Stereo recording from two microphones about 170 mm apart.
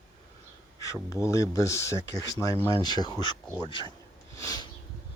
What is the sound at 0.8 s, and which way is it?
Speech, 20° left (ahead or behind).